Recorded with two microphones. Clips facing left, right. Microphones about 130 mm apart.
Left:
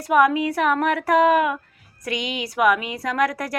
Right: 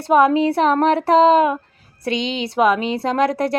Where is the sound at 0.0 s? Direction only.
30° right (ahead or behind).